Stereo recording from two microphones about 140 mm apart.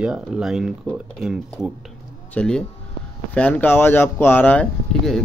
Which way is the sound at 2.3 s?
5° left (ahead or behind).